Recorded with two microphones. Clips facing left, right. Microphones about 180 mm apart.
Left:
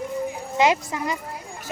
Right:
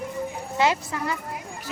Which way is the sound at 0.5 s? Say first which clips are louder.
Left 3 dB; 15° left (ahead or behind).